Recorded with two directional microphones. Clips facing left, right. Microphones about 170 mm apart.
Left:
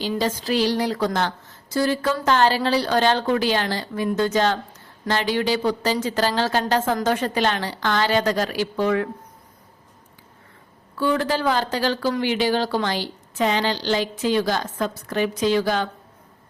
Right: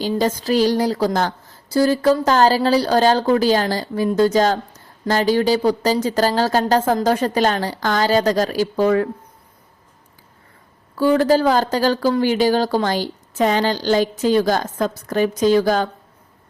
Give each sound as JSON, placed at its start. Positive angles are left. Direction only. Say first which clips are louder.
{"t": 0.2, "sound": "speech", "louder": "right 5 dB", "side_deg": -40}
{"t": 10.9, "sound": "speech", "louder": "right 7 dB", "side_deg": -40}